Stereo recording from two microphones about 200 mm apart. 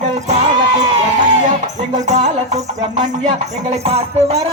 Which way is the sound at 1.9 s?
35° right (ahead or behind).